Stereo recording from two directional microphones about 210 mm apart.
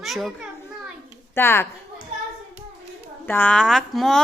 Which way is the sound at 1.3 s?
10° left (ahead or behind).